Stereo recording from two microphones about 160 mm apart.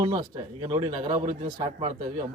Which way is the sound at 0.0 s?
30° right (ahead or behind).